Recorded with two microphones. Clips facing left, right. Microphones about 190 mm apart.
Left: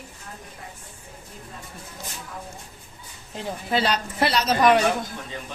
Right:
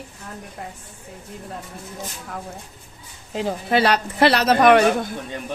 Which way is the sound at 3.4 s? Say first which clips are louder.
Right 5 dB; 70° right (ahead or behind).